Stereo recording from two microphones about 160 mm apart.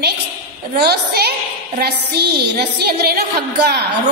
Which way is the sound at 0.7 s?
80° right.